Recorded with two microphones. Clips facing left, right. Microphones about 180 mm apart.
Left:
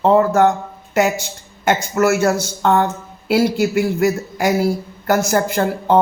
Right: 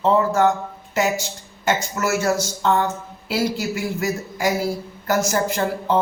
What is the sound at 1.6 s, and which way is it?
Speech, 60° left (ahead or behind).